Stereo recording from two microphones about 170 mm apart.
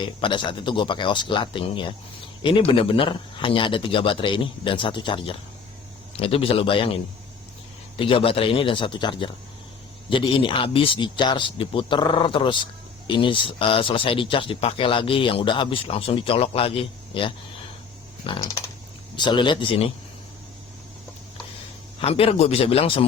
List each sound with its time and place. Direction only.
0.0 s a man's voice: 30° left (ahead or behind)
18.3 s a man's voice: 15° left (ahead or behind)
22.0 s speech: 35° left (ahead or behind)